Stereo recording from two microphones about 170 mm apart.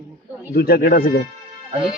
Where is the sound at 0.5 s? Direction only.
65° left (ahead or behind).